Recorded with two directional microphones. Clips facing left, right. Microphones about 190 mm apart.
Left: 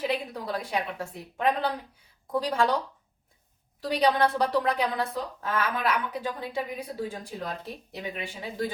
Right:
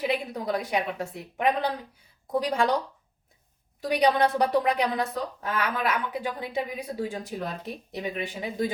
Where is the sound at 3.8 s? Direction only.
15° right (ahead or behind).